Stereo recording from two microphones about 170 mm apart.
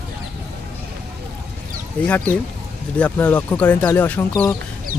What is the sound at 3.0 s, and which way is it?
Speech, 10° left (ahead or behind).